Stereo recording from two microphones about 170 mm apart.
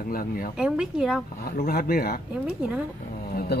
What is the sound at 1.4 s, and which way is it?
Speech, 60° left (ahead or behind).